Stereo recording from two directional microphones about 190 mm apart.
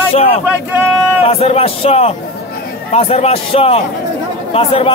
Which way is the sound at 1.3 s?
30° left (ahead or behind).